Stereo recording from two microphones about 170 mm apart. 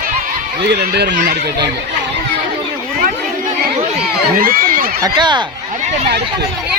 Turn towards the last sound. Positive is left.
turn(degrees=-25)  # may be behind; listen again after turning